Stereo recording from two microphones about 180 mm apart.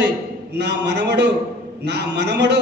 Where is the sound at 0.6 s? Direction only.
70° right (ahead or behind).